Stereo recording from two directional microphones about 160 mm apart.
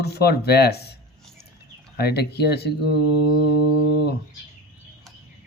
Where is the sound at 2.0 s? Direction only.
90° left.